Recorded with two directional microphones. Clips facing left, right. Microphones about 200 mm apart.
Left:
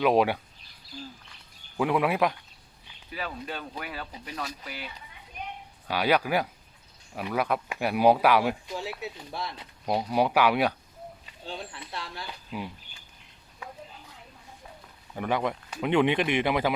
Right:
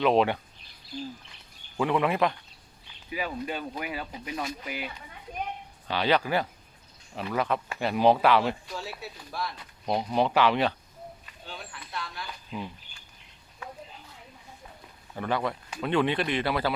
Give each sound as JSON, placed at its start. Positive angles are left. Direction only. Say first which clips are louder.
{"t": 0.0, "sound": "speech", "louder": "even", "side_deg": 10}
{"t": 1.7, "sound": "speech", "louder": "even", "side_deg": 10}
{"t": 3.1, "sound": "speech", "louder": "right 3 dB", "side_deg": -10}
{"t": 5.9, "sound": "speech", "louder": "left 1 dB", "side_deg": 10}
{"t": 9.8, "sound": "speech", "louder": "left 1 dB", "side_deg": 10}
{"t": 11.3, "sound": "speech", "louder": "left 4 dB", "side_deg": 30}
{"t": 12.5, "sound": "a sound", "louder": "left 1 dB", "side_deg": 10}
{"t": 15.1, "sound": "speech", "louder": "left 1 dB", "side_deg": 15}